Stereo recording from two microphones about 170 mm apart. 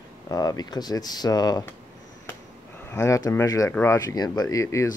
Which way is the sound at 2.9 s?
15° left (ahead or behind).